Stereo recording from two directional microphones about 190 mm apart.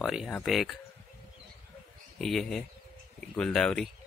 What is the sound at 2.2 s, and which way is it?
Speech, centre (ahead or behind).